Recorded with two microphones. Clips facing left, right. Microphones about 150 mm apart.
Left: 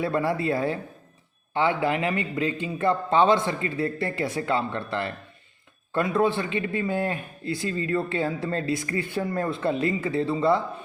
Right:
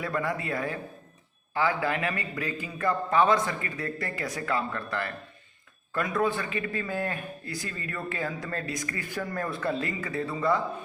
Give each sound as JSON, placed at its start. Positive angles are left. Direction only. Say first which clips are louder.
{"t": 0.0, "sound": "a man's voice", "louder": "left 6 dB", "side_deg": 30}